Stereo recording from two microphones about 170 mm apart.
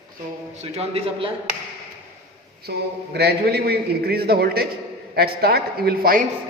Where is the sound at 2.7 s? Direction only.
75° right (ahead or behind).